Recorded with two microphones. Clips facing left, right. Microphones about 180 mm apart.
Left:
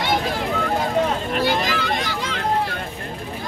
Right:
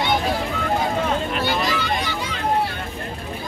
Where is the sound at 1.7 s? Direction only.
90° left.